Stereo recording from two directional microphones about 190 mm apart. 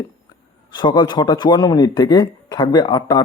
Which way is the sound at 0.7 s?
25° left (ahead or behind).